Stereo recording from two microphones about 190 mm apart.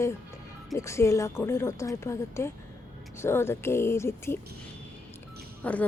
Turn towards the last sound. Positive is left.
turn(degrees=10)  # may be behind; listen again after turning